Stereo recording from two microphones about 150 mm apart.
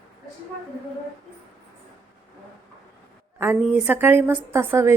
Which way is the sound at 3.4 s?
10° right (ahead or behind).